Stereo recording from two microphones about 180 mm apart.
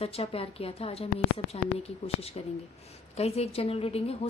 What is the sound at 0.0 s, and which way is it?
A woman's voice, 35° left (ahead or behind).